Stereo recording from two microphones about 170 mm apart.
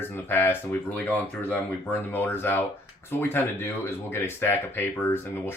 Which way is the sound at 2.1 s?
10° left (ahead or behind).